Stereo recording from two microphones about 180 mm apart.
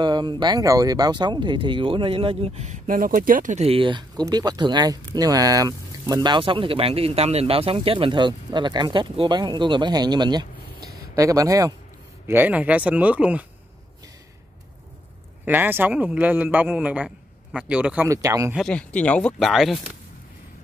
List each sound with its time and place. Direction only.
0.0 s a man's voice: 25° right (ahead or behind); by 13.5 s 5° right (ahead or behind)
15.4 s a man's voice: 10° right (ahead or behind)
18.5 s speech: 5° left (ahead or behind)